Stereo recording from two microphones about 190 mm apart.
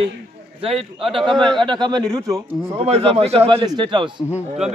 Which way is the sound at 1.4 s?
25° right (ahead or behind).